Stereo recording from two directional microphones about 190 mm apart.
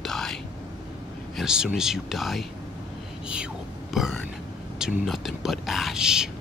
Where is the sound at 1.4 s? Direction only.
5° right (ahead or behind).